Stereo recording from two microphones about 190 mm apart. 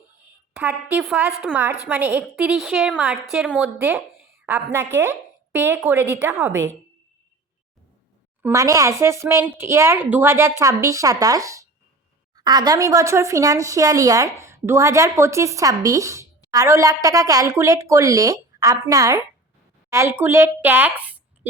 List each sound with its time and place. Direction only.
0.5 s a woman's voice: 10° right (ahead or behind)
8.4 s speech: 15° right (ahead or behind)